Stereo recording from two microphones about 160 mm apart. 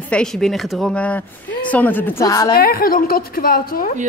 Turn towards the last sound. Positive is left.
turn(degrees=65)  # may be behind; listen again after turning